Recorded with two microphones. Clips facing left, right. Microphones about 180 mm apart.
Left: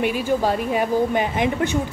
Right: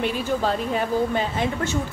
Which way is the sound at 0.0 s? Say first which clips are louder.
Left 3 dB; 10° left (ahead or behind).